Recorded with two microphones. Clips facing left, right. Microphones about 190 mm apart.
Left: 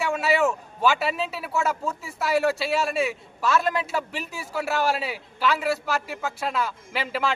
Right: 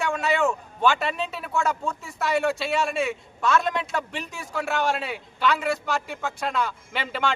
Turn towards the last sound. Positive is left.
turn(degrees=0)  # may be behind; listen again after turning